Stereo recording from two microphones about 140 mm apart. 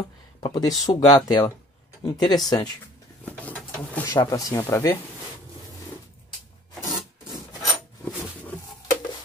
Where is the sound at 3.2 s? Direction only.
10° left (ahead or behind).